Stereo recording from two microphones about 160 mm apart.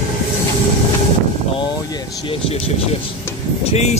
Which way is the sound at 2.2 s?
40° left (ahead or behind).